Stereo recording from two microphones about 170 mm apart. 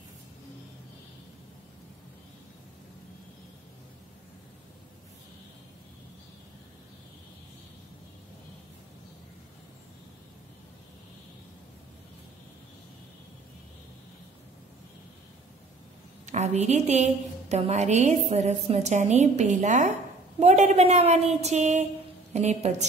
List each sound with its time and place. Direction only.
16.3 s a woman's voice: 40° right (ahead or behind)